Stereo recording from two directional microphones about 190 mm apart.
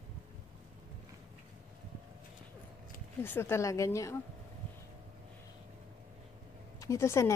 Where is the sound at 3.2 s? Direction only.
10° left (ahead or behind).